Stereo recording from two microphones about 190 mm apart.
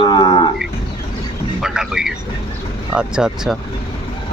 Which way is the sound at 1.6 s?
5° right (ahead or behind).